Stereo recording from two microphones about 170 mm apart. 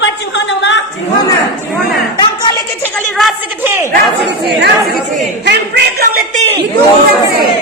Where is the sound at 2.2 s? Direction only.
25° left (ahead or behind).